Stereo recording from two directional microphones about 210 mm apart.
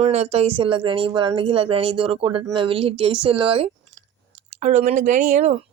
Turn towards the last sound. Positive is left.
turn(degrees=-35)  # may be behind; listen again after turning